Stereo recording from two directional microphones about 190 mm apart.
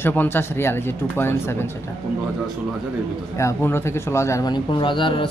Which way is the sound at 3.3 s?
15° left (ahead or behind).